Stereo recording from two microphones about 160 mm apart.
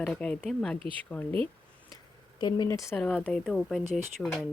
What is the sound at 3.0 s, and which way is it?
Speech, 5° left (ahead or behind).